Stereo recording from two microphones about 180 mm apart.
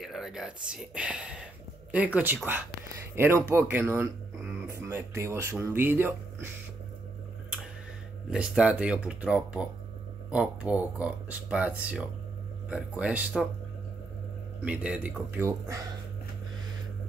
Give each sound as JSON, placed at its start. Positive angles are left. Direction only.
{"t": 0.0, "sound": "speech", "side_deg": 0}
{"t": 8.3, "sound": "speech", "side_deg": -5}
{"t": 14.6, "sound": "speech", "side_deg": -5}